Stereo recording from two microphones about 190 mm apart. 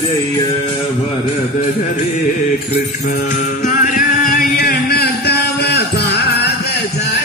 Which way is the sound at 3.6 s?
40° left (ahead or behind).